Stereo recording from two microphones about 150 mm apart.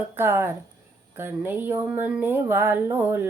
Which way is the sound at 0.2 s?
15° right (ahead or behind).